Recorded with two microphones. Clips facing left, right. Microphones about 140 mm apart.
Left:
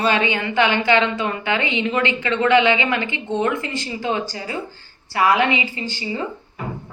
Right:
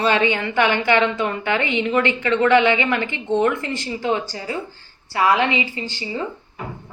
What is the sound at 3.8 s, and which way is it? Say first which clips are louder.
Speech: right 2 dB; 20° left (ahead or behind).